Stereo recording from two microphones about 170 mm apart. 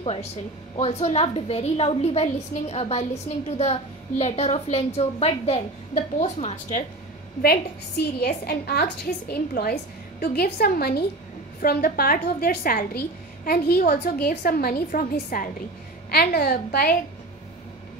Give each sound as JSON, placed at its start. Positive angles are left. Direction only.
{"t": 0.0, "sound": "a woman's voice", "side_deg": 35}
{"t": 8.2, "sound": "a woman's voice", "side_deg": 65}